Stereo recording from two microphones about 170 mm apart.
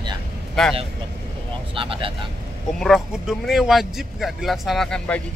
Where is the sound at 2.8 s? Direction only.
Centre (ahead or behind).